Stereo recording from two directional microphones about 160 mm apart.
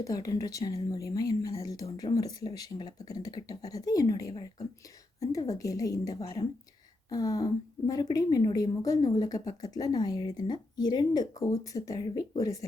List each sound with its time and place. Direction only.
0.0 s a woman's voice: 20° left (ahead or behind)